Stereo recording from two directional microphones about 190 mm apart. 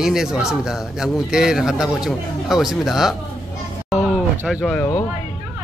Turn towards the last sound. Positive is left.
turn(degrees=15)  # may be behind; listen again after turning